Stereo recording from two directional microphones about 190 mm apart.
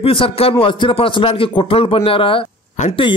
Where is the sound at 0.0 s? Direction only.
30° left (ahead or behind).